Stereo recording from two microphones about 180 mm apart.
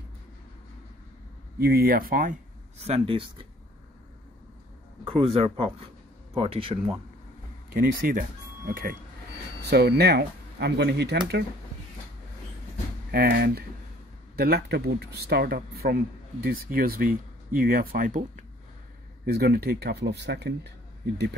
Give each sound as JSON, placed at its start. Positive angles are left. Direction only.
{"t": 1.6, "sound": "speech", "side_deg": -55}
{"t": 2.8, "sound": "speech", "side_deg": -30}
{"t": 5.1, "sound": "speech", "side_deg": -30}
{"t": 7.7, "sound": "speech", "side_deg": -50}
{"t": 9.7, "sound": "speech", "side_deg": -65}
{"t": 13.1, "sound": "speech", "side_deg": -60}
{"t": 19.3, "sound": "speech", "side_deg": -60}